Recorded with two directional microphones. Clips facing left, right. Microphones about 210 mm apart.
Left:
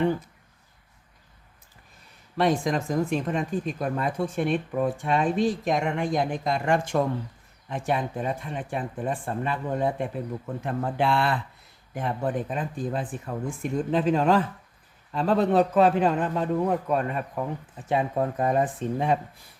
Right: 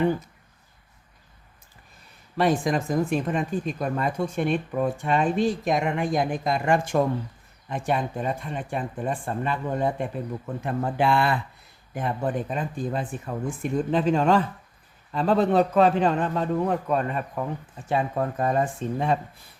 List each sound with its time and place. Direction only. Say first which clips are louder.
2.4 s speech: right 1 dB; 5° right (ahead or behind)
17.7 s speech: even; 20° left (ahead or behind)